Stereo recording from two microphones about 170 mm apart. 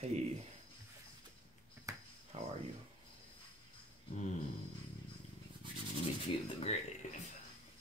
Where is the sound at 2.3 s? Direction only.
40° right (ahead or behind).